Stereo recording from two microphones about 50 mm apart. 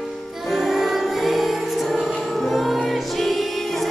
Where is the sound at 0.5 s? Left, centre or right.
Centre.